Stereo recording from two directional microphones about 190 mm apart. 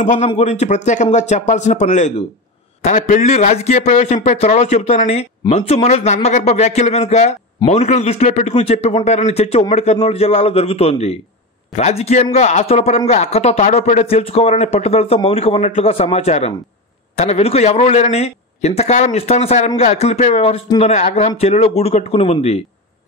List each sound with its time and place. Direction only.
0.0 s speech: 40° left (ahead or behind)